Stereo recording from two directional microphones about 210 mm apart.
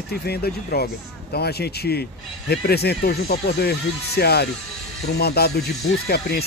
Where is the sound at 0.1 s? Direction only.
50° left (ahead or behind).